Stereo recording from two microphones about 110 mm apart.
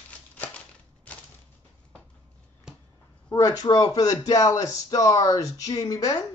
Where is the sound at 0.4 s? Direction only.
10° left (ahead or behind).